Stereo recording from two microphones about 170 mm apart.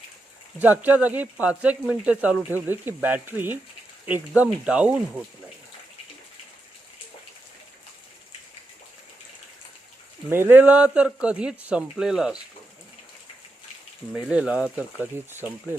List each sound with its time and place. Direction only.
0.6 s speech: 10° right (ahead or behind)
10.2 s speech: 15° right (ahead or behind)
14.1 s speech: 5° right (ahead or behind)